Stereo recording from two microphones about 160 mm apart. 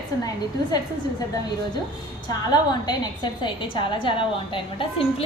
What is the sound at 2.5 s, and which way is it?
A woman's voice, 25° left (ahead or behind).